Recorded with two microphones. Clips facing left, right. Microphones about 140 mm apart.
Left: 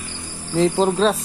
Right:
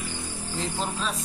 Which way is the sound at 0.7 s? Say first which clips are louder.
Left 13 dB; 90° left.